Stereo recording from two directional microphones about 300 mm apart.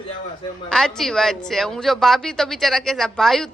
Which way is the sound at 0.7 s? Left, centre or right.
Centre.